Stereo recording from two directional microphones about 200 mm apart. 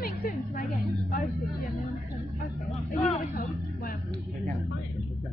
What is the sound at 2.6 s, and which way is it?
Speech, centre (ahead or behind).